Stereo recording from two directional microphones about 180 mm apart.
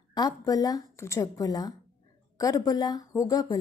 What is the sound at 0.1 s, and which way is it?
A woman's voice, 20° left (ahead or behind).